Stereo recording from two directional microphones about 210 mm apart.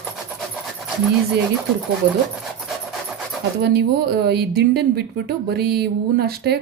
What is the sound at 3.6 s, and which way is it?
Speech, 50° right (ahead or behind).